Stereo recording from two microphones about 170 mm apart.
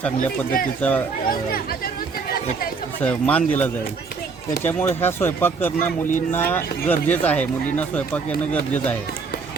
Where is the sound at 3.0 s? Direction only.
10° left (ahead or behind).